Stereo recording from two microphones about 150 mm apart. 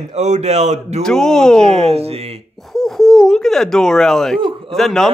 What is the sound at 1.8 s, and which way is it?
Speech, 45° right (ahead or behind).